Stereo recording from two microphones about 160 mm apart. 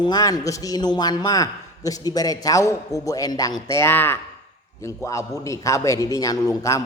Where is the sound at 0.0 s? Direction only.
25° left (ahead or behind).